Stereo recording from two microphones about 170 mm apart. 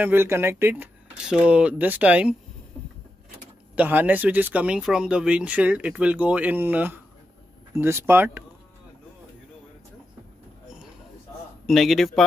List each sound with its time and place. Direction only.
0.0 s speech: 15° right (ahead or behind)
3.7 s speech: 10° right (ahead or behind)
11.6 s a man's voice: centre (ahead or behind)